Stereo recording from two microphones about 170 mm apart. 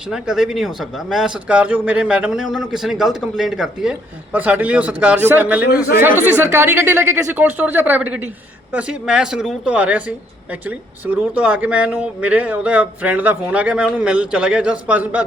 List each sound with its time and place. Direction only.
0.1 s a man's voice: 5° right (ahead or behind)